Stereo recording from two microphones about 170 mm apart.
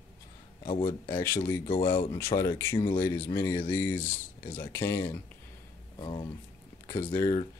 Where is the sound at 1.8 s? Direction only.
15° left (ahead or behind).